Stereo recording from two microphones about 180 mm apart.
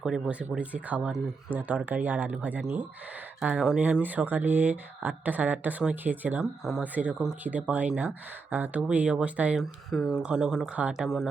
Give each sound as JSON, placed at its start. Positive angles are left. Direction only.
{"t": 0.0, "sound": "speech", "side_deg": -5}